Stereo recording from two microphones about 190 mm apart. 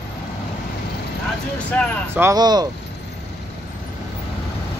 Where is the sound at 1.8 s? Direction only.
10° left (ahead or behind).